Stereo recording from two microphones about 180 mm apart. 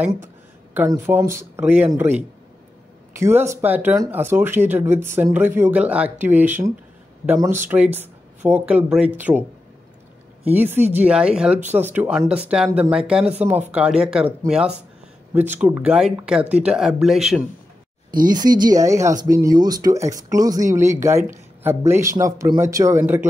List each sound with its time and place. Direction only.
0.7 s speech: 10° right (ahead or behind)
10.4 s speech: 10° right (ahead or behind)
15.3 s speech: 10° right (ahead or behind)
18.1 s speech: 20° right (ahead or behind)